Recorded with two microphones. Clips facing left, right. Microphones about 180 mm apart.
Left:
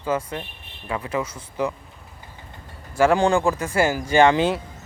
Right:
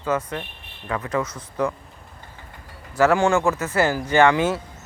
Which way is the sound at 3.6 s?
10° left (ahead or behind).